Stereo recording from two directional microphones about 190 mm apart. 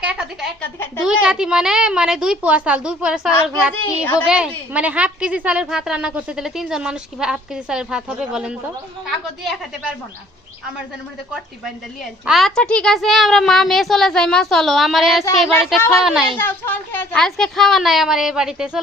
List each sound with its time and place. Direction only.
0.0 s a woman's voice: 5° right (ahead or behind)
3.8 s a woman's voice: 15° left (ahead or behind)
4.3 s a woman's voice: 5° right (ahead or behind)
12.2 s a woman's voice: centre (ahead or behind)
15.8 s a woman's voice: 15° left (ahead or behind); by 18.8 s 5° right (ahead or behind)